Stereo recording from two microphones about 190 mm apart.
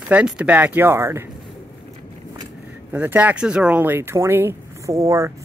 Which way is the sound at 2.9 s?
10° right (ahead or behind).